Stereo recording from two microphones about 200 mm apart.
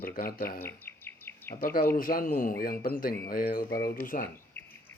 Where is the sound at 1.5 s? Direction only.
50° left (ahead or behind).